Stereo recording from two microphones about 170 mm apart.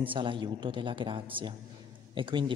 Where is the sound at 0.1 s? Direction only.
30° right (ahead or behind).